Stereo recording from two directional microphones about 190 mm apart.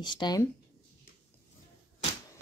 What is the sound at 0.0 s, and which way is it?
Speech, 25° left (ahead or behind).